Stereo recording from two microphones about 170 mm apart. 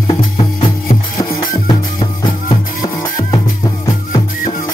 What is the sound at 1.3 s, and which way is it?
Music, 55° left (ahead or behind).